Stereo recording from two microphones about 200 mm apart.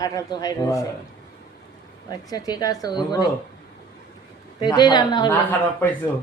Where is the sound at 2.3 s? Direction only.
20° left (ahead or behind).